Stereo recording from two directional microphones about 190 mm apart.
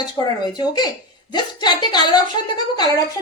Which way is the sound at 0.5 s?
20° left (ahead or behind).